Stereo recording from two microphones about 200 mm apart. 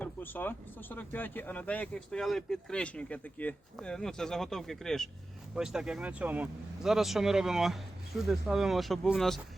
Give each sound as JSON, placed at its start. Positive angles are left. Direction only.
{"t": 0.0, "sound": "speech", "side_deg": 10}